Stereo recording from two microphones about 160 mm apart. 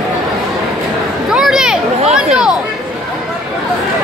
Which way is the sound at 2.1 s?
5° right (ahead or behind).